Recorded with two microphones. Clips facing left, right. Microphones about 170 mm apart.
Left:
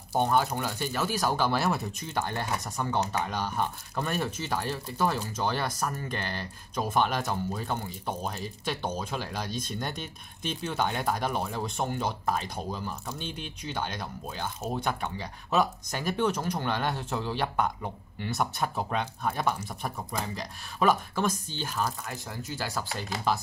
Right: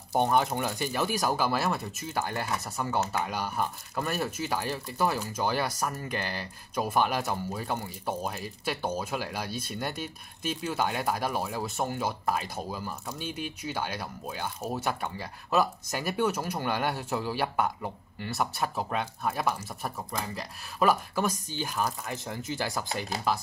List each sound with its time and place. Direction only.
0.1 s speech: 15° right (ahead or behind)
23.3 s speech: 5° right (ahead or behind)